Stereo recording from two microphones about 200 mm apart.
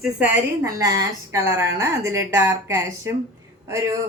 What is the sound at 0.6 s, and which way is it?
A man's voice, 15° right (ahead or behind).